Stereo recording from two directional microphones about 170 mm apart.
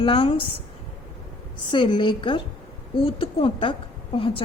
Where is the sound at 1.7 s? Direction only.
30° left (ahead or behind).